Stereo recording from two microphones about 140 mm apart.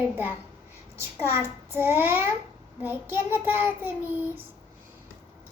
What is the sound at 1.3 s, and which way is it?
A woman's voice, 15° right (ahead or behind).